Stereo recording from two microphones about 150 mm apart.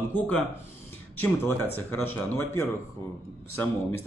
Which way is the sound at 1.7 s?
15° left (ahead or behind).